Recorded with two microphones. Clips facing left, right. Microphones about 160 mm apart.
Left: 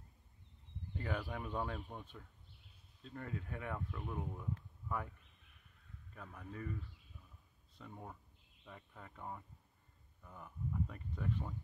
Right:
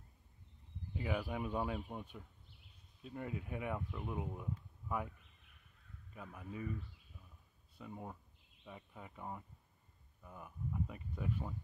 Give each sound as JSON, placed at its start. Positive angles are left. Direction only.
{"t": 0.9, "sound": "speech", "side_deg": -10}
{"t": 6.1, "sound": "speech", "side_deg": -5}
{"t": 7.7, "sound": "speech", "side_deg": -10}